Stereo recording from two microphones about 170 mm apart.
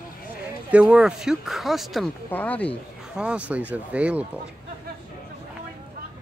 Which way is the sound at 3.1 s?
5° right (ahead or behind).